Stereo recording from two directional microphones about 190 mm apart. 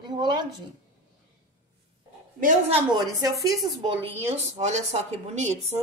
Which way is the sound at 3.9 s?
30° right (ahead or behind).